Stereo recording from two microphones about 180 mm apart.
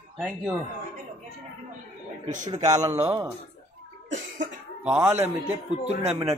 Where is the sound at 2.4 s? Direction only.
20° right (ahead or behind).